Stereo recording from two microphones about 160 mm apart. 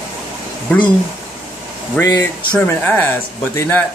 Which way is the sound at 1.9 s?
15° left (ahead or behind).